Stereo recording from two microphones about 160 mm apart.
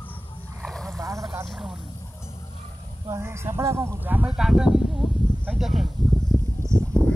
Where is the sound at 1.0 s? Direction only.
20° right (ahead or behind).